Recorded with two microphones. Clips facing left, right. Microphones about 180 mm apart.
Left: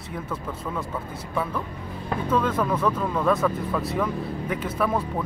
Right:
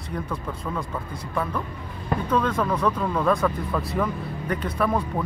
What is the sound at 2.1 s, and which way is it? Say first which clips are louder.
Speech: even; 5° left (ahead or behind).